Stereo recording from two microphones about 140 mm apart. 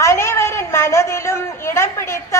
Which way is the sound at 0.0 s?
20° left (ahead or behind).